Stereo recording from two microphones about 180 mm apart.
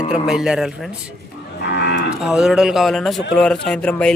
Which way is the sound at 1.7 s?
70° left (ahead or behind).